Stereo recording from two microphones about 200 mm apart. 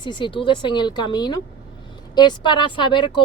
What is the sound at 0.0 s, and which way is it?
A woman's voice, 25° left (ahead or behind).